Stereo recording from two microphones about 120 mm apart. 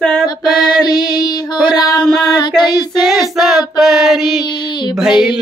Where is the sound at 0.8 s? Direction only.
35° left (ahead or behind).